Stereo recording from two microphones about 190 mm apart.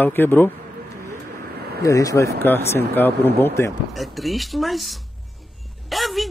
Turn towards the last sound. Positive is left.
turn(degrees=0)  # may be behind; listen again after turning